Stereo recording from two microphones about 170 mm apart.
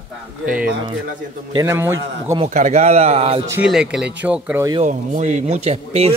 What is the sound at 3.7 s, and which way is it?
Speech, 5° right (ahead or behind).